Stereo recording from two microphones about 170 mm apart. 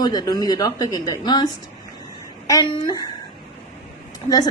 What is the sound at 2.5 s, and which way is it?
Speech, 25° left (ahead or behind).